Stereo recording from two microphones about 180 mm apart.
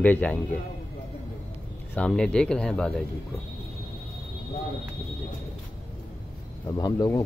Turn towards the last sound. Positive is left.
turn(degrees=20)  # may be behind; listen again after turning